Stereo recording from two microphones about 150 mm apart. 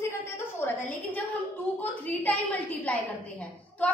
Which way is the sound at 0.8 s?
10° left (ahead or behind).